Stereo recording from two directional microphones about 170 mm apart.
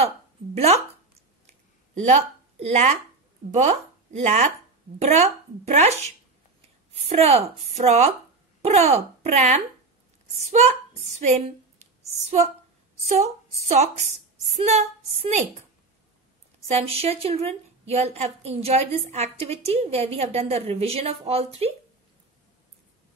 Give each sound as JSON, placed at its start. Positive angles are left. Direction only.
{"t": 0.6, "sound": "a woman's voice", "side_deg": -35}
{"t": 2.6, "sound": "a woman's voice", "side_deg": -40}
{"t": 13.0, "sound": "a woman's voice", "side_deg": -40}
{"t": 16.5, "sound": "a woman's voice", "side_deg": -35}